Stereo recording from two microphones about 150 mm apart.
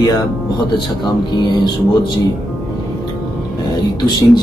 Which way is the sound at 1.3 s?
30° left (ahead or behind).